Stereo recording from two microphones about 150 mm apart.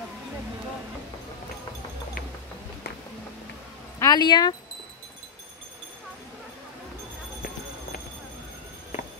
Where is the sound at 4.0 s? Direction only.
25° left (ahead or behind).